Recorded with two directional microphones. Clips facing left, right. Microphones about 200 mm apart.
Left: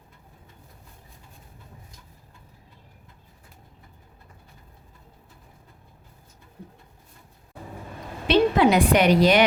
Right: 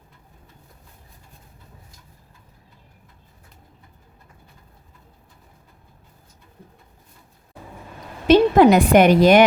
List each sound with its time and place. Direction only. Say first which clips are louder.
8.3 s a woman's voice: right 6 dB; 45° right (ahead or behind)